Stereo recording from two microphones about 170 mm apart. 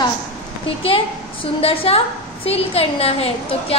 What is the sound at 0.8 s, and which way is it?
A woman's voice, 35° left (ahead or behind).